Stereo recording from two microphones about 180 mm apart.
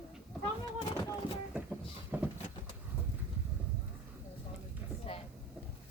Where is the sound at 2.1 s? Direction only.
10° right (ahead or behind).